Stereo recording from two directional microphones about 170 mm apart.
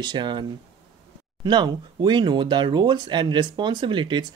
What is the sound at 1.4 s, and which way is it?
Speech, 25° right (ahead or behind).